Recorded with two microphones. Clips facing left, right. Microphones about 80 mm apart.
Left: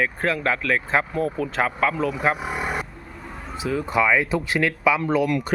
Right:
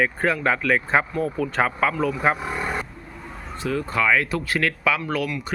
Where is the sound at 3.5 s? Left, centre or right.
Centre.